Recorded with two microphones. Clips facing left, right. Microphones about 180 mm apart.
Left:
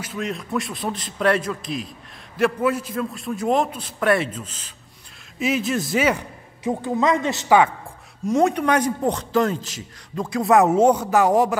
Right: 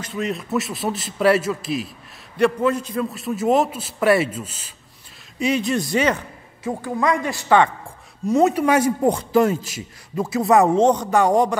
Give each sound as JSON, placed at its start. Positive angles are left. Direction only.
{"t": 0.0, "sound": "a man's voice", "side_deg": 0}
{"t": 2.3, "sound": "a man's voice", "side_deg": 5}
{"t": 6.8, "sound": "a woman's voice", "side_deg": 20}
{"t": 7.4, "sound": "speech", "side_deg": 10}
{"t": 8.3, "sound": "a man's voice", "side_deg": 0}